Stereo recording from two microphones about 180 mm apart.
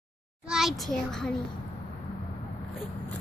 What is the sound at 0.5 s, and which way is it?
Speech, centre (ahead or behind).